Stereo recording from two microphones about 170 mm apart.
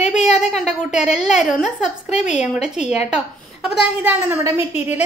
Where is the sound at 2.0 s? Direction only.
45° left (ahead or behind).